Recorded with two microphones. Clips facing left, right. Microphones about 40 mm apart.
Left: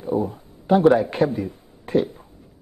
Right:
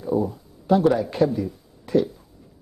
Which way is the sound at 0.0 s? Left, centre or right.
Left.